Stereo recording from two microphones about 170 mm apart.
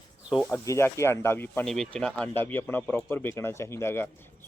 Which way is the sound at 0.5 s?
20° left (ahead or behind).